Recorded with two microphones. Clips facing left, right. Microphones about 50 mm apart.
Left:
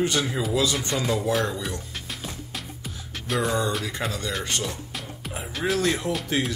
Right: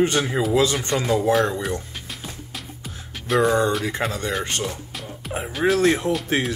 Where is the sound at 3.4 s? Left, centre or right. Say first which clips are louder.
Right 6 dB; right.